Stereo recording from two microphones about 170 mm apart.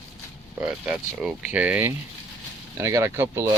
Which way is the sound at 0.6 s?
5° right (ahead or behind).